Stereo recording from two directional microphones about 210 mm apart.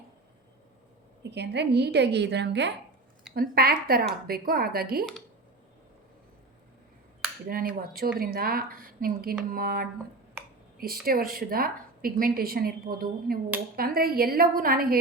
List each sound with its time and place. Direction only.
1.2 s a woman's voice: 55° right (ahead or behind)
7.4 s a woman's voice: 45° right (ahead or behind)